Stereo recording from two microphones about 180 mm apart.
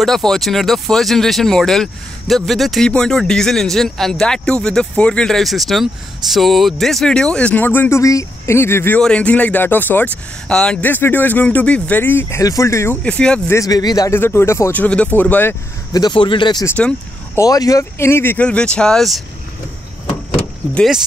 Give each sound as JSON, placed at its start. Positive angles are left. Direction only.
{"t": 0.0, "sound": "speech", "side_deg": 0}
{"t": 13.6, "sound": "speech", "side_deg": 20}
{"t": 15.9, "sound": "speech", "side_deg": 25}
{"t": 16.6, "sound": "speech", "side_deg": 10}
{"t": 17.4, "sound": "speech", "side_deg": 20}
{"t": 20.7, "sound": "speech", "side_deg": 0}